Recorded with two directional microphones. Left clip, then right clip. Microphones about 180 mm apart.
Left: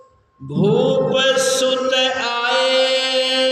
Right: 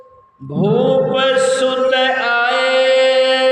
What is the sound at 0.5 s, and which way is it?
Mantra, 15° left (ahead or behind).